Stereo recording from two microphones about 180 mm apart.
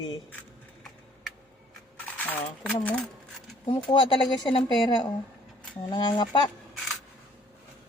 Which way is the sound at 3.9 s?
25° left (ahead or behind).